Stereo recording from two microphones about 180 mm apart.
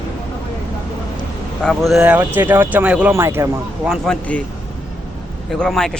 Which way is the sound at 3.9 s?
5° left (ahead or behind).